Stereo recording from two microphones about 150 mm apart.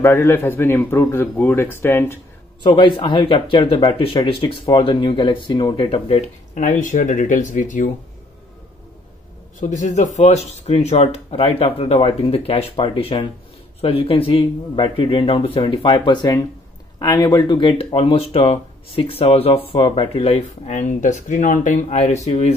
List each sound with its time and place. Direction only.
0.0 s a man's voice: 15° left (ahead or behind)
2.6 s speech: 35° left (ahead or behind); by 7.9 s 60° left (ahead or behind)
9.6 s speech: 55° left (ahead or behind)